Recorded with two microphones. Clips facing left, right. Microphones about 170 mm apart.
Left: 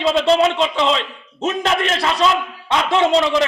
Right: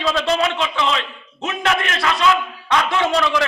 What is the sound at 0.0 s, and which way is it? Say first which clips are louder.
A man's voice: left 5 dB; 25° left (ahead or behind).